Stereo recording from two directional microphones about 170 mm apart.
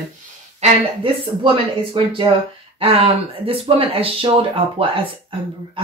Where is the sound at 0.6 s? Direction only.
40° right (ahead or behind).